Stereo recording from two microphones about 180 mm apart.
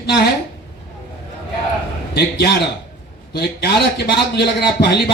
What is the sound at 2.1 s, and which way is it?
A man's voice, 65° left (ahead or behind).